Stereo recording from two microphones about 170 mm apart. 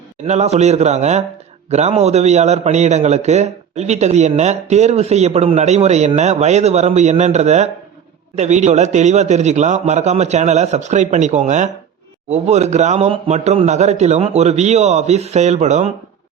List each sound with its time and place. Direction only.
0.3 s a man's voice: 40° right (ahead or behind)